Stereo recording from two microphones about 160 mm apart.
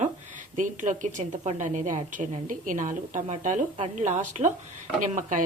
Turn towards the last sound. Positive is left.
turn(degrees=-50)  # may be behind; listen again after turning